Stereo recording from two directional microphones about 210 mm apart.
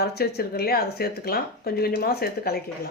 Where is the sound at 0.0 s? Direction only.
50° left (ahead or behind).